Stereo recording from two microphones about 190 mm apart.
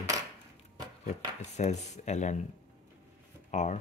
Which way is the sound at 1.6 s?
35° left (ahead or behind).